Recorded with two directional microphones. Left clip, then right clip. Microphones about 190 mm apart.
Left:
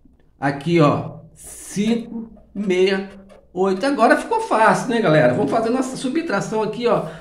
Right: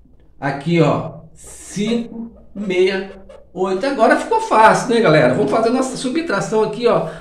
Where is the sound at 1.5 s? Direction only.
20° left (ahead or behind).